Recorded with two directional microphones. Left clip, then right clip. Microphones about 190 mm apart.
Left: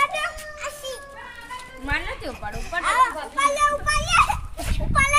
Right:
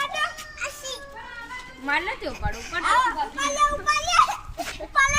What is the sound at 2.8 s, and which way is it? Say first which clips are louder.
Children playing: left 1 dB; 30° left (ahead or behind).